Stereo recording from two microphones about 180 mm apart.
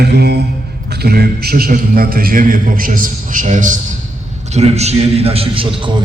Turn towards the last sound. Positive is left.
turn(degrees=-30)  # may be behind; listen again after turning